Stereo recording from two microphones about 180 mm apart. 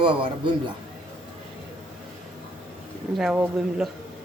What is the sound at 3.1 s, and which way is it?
Speech, 5° right (ahead or behind).